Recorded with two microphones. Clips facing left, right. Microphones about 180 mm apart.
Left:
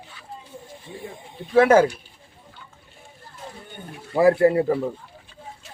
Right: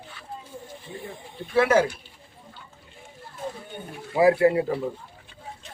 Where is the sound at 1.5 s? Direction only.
50° left (ahead or behind).